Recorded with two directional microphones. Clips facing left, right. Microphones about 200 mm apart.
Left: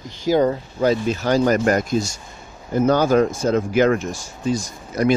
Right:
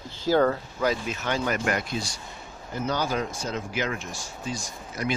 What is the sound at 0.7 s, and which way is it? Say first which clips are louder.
Speech: left 8 dB; 30° left (ahead or behind).